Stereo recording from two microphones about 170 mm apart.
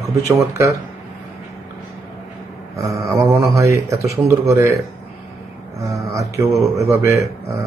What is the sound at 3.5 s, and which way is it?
Speech, 20° right (ahead or behind).